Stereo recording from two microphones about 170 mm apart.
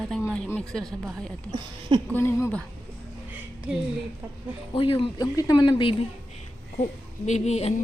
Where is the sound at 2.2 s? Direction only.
15° left (ahead or behind).